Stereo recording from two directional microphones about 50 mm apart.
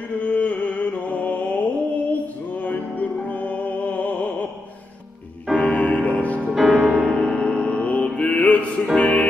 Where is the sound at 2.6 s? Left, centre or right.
Left.